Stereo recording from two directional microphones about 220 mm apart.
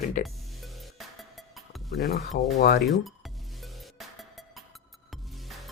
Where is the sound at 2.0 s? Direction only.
35° left (ahead or behind).